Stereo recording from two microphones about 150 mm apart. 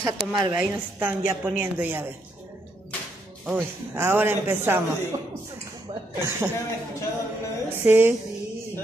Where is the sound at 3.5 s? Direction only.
15° right (ahead or behind).